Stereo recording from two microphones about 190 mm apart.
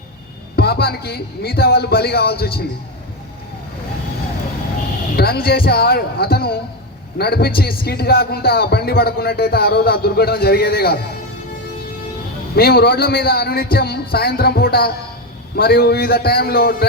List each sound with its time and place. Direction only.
0.5 s speech: 55° left (ahead or behind)
5.1 s speech: 55° left (ahead or behind)
12.5 s a man's voice: 55° left (ahead or behind)